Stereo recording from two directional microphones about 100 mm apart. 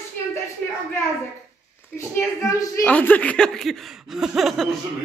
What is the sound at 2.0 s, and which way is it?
Speech, 30° left (ahead or behind).